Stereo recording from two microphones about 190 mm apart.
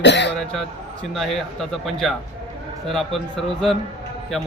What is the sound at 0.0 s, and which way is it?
Speech, 65° left (ahead or behind).